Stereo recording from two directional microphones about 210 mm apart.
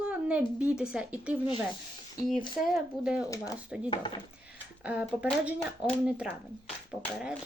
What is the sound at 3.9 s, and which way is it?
Speech, 20° left (ahead or behind).